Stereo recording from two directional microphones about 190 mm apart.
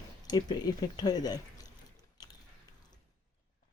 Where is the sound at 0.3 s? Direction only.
20° left (ahead or behind).